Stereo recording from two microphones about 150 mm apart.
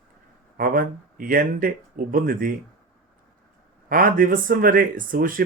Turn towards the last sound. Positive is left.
turn(degrees=-70)  # may be behind; listen again after turning